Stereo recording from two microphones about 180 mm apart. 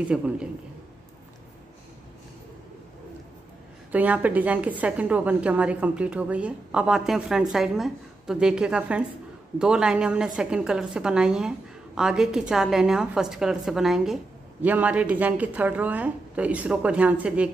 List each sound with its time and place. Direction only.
0.1 s a woman's voice: 5° right (ahead or behind)
3.9 s a woman's voice: 10° right (ahead or behind)